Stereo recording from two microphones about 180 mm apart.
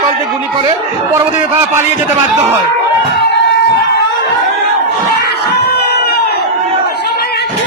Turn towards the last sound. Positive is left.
turn(degrees=60)  # may be behind; listen again after turning